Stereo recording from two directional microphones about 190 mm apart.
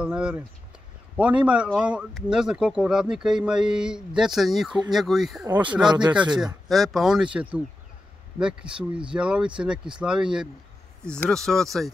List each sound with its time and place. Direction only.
0.0 s a sound: 5° right (ahead or behind)
1.1 s speech: 5° right (ahead or behind)
5.5 s speech: 25° right (ahead or behind)
6.4 s speech: centre (ahead or behind)